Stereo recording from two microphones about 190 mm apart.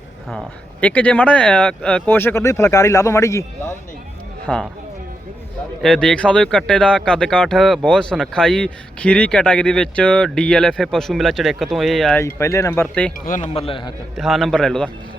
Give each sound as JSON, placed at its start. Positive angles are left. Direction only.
{"t": 0.3, "sound": "speech", "side_deg": 5}
{"t": 4.4, "sound": "speech", "side_deg": 5}
{"t": 5.8, "sound": "speech", "side_deg": 5}
{"t": 12.2, "sound": "speech", "side_deg": 15}
{"t": 13.2, "sound": "a man's voice", "side_deg": 40}
{"t": 13.5, "sound": "a man's voice", "side_deg": 30}
{"t": 14.2, "sound": "speech", "side_deg": 0}